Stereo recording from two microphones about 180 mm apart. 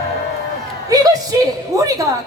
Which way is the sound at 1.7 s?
20° right (ahead or behind).